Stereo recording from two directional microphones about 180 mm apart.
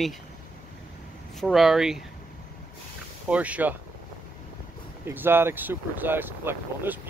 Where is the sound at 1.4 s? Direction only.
Centre (ahead or behind).